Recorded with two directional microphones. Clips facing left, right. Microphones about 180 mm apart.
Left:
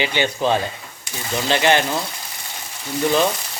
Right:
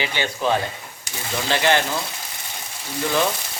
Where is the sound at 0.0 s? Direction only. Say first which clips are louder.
Left 3 dB; 20° left (ahead or behind).